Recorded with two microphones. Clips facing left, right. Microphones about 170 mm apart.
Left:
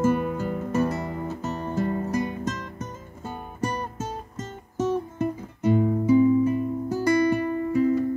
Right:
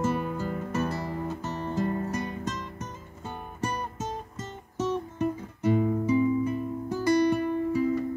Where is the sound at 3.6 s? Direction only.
35° left (ahead or behind).